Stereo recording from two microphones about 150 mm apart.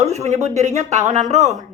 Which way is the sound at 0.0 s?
45° right (ahead or behind).